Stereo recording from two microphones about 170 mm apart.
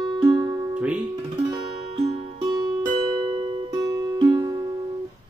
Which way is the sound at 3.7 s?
20° right (ahead or behind).